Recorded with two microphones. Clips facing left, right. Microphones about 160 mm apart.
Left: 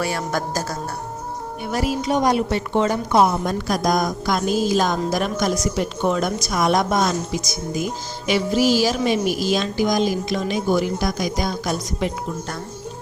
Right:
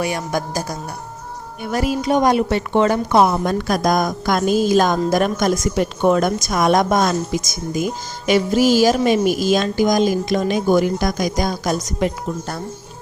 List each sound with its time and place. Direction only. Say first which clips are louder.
0.0 s speech: right 2 dB; 15° right (ahead or behind)
1.7 s a woman's voice: right 3 dB; 55° right (ahead or behind)